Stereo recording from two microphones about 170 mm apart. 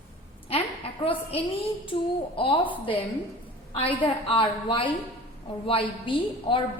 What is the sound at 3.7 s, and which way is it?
A woman's voice, 35° left (ahead or behind).